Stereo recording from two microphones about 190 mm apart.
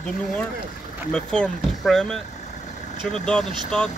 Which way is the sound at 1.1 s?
5° left (ahead or behind).